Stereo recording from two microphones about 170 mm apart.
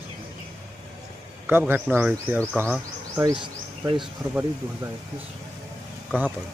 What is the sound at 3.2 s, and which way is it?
Speech, 25° right (ahead or behind).